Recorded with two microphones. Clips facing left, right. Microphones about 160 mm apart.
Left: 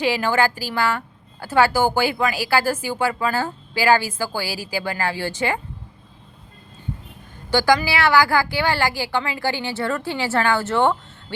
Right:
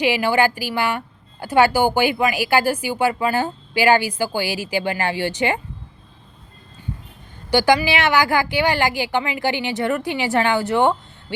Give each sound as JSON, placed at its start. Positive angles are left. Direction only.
{"t": 0.0, "sound": "a woman's voice", "side_deg": -15}
{"t": 7.5, "sound": "a woman's voice", "side_deg": -15}